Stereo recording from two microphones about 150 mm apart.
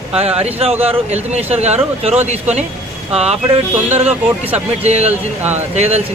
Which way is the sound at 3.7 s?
10° right (ahead or behind).